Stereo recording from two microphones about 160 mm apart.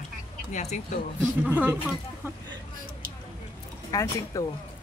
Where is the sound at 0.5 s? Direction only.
45° left (ahead or behind).